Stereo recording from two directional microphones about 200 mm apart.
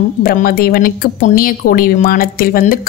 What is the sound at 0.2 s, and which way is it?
Speech, 50° left (ahead or behind).